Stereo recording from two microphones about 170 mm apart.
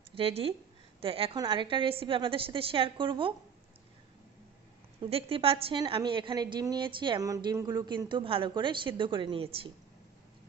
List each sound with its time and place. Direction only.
0.1 s a woman's voice: 35° right (ahead or behind)
5.0 s a woman's voice: 35° right (ahead or behind)